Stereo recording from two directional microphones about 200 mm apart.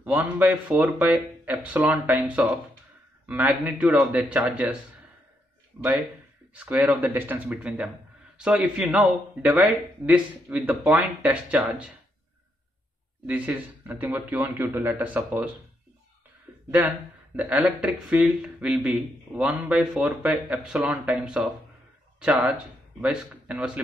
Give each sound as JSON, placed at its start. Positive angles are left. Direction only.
{"t": 0.0, "sound": "speech", "side_deg": -10}
{"t": 5.8, "sound": "speech", "side_deg": -5}
{"t": 13.3, "sound": "speech", "side_deg": -5}
{"t": 17.4, "sound": "speech", "side_deg": -5}
{"t": 22.9, "sound": "speech", "side_deg": -5}